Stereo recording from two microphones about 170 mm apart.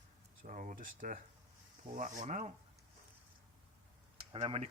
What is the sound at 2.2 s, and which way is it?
Speech, 45° right (ahead or behind).